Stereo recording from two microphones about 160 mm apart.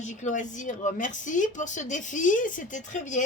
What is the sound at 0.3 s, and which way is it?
Speech, 50° left (ahead or behind).